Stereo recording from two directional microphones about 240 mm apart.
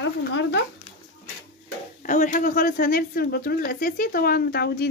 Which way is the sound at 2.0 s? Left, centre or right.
Left.